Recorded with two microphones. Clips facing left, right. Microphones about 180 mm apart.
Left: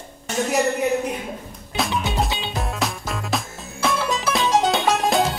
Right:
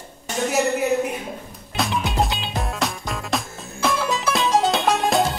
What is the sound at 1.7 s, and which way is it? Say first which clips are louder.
Music: even; centre (ahead or behind).